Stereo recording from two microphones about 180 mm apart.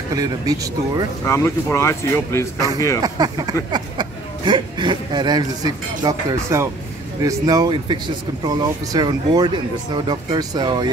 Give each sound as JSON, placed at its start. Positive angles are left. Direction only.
{"t": 0.1, "sound": "speech", "side_deg": -20}
{"t": 1.2, "sound": "speech", "side_deg": 15}
{"t": 3.0, "sound": "speech", "side_deg": -20}